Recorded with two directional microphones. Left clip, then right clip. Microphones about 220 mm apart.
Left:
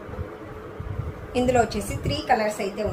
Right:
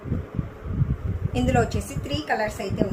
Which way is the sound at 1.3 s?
15° right (ahead or behind).